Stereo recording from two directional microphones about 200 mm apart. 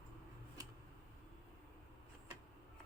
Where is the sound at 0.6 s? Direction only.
20° right (ahead or behind).